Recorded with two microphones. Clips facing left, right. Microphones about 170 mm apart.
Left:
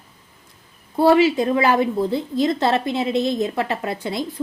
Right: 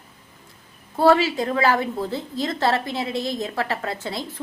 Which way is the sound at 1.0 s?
20° left (ahead or behind).